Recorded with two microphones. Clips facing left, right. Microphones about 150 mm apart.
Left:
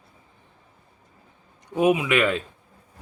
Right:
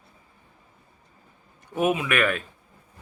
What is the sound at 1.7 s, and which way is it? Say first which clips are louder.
Speech: left 4 dB; 15° left (ahead or behind).